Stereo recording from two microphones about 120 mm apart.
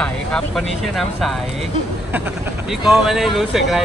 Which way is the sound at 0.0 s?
5° left (ahead or behind).